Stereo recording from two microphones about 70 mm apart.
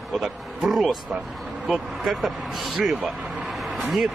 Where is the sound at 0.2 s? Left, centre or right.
Centre.